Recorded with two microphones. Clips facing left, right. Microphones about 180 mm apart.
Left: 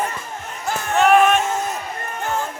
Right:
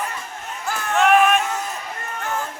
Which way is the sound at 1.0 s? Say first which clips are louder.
Left 2 dB; centre (ahead or behind).